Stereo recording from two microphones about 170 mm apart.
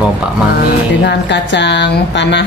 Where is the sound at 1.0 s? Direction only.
90° left.